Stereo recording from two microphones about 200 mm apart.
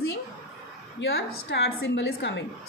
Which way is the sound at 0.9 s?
55° left (ahead or behind).